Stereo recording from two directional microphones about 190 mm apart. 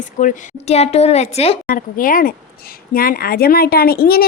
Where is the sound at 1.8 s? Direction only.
45° left (ahead or behind).